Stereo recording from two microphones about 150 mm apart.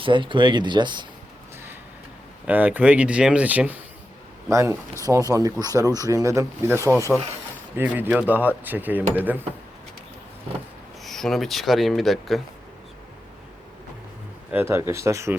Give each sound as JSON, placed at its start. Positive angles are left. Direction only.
{"t": 0.0, "sound": "speech", "side_deg": -35}
{"t": 2.5, "sound": "speech", "side_deg": -10}
{"t": 11.0, "sound": "speech", "side_deg": 0}
{"t": 14.5, "sound": "speech", "side_deg": -15}